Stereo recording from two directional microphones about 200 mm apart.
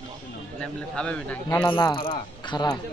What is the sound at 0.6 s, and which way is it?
A man's voice, 5° left (ahead or behind).